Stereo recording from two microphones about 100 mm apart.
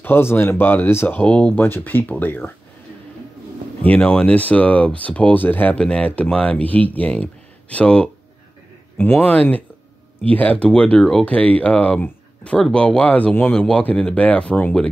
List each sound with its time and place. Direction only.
0.0 s speech: 25° left (ahead or behind)
3.8 s speech: 15° left (ahead or behind)